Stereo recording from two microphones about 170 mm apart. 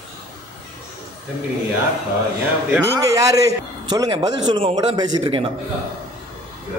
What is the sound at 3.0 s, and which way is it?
Speech, 20° right (ahead or behind).